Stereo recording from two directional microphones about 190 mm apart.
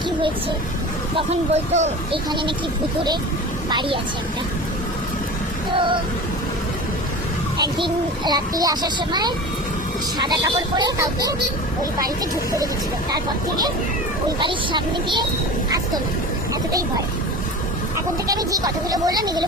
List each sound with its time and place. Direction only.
1.1 s speech: 35° right (ahead or behind)
3.7 s a child's voice: 25° right (ahead or behind)
5.7 s a child's voice: 25° right (ahead or behind)
7.6 s a child's voice: 20° right (ahead or behind)
13.1 s a child's voice: 20° right (ahead or behind)
18.3 s a child's voice: 20° right (ahead or behind)